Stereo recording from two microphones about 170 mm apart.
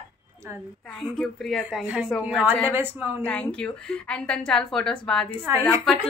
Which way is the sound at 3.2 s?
5° left (ahead or behind).